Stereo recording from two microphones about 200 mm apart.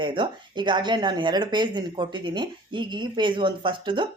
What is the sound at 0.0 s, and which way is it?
Speech, 25° right (ahead or behind).